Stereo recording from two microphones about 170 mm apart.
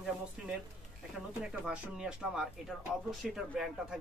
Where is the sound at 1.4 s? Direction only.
5° right (ahead or behind).